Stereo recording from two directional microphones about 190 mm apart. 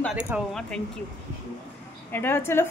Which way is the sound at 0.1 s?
5° right (ahead or behind).